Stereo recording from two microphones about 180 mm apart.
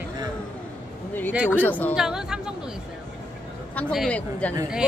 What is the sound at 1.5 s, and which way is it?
Speech, 10° left (ahead or behind).